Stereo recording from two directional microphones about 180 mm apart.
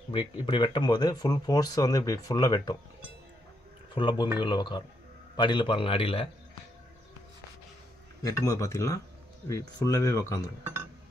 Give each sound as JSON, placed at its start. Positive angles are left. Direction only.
{"t": 0.1, "sound": "speech", "side_deg": 25}
{"t": 3.9, "sound": "speech", "side_deg": 25}
{"t": 8.2, "sound": "speech", "side_deg": 20}